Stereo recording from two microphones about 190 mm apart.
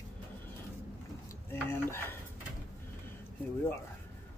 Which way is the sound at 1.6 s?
10° left (ahead or behind).